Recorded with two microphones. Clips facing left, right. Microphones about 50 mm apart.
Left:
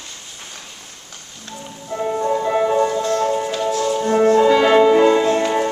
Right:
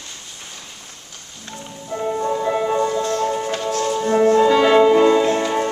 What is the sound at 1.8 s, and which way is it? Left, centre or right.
Music, centre.